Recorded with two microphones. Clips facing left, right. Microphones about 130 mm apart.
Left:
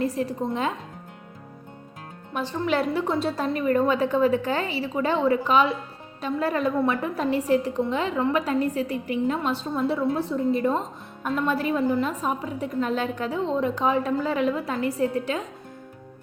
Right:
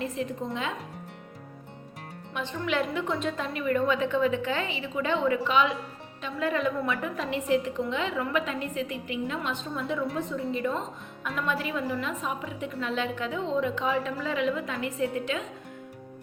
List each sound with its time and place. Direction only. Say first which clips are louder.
0.0 s a woman's voice: left 6 dB; 35° left (ahead or behind)
2.3 s a woman's voice: left 5 dB; 35° left (ahead or behind)